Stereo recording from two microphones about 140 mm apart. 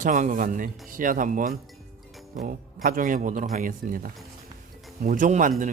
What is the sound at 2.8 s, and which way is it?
Speech, 75° right (ahead or behind).